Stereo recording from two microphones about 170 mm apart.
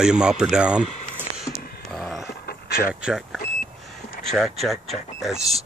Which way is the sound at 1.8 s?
Centre (ahead or behind).